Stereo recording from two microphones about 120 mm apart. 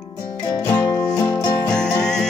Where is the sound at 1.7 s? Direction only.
5° left (ahead or behind).